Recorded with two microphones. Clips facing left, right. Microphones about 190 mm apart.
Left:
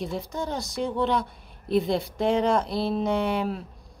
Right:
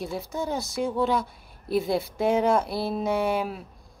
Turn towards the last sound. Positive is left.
turn(degrees=-5)  # may be behind; listen again after turning